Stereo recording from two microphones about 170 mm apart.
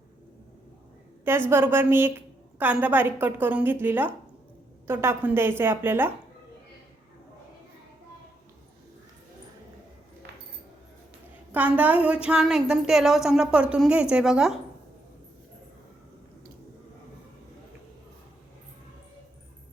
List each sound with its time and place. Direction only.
1.2 s a woman's voice: 15° right (ahead or behind)
11.5 s a woman's voice: 10° right (ahead or behind)